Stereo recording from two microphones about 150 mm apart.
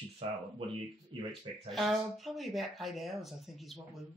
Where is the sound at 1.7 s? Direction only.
Centre (ahead or behind).